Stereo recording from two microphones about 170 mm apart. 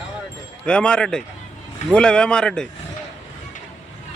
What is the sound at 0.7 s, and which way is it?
A man's voice, 5° left (ahead or behind).